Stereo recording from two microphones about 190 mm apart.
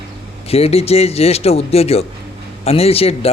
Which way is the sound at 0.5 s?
30° left (ahead or behind).